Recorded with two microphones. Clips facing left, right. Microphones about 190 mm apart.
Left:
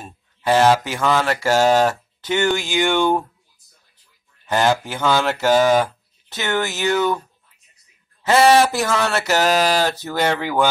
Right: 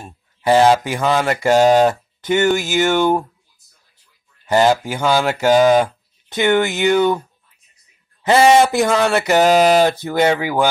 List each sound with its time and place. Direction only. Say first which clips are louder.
0.4 s speech: right 3 dB; 15° right (ahead or behind)
4.5 s speech: right 4 dB; 10° right (ahead or behind)